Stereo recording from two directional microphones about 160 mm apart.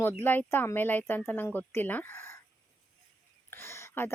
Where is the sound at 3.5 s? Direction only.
15° left (ahead or behind).